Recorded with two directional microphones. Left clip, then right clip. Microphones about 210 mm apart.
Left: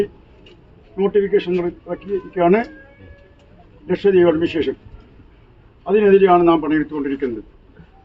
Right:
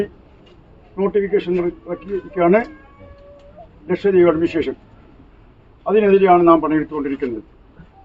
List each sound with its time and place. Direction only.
0.9 s speech: 15° left (ahead or behind)
3.8 s speech: 15° left (ahead or behind)
5.8 s speech: 15° left (ahead or behind)